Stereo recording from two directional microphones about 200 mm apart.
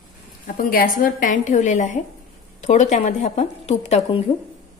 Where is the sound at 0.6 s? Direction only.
45° left (ahead or behind).